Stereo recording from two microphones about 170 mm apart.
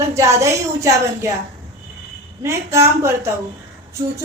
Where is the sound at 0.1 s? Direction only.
15° right (ahead or behind).